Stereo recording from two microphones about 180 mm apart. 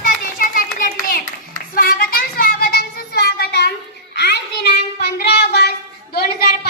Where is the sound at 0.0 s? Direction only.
50° left (ahead or behind).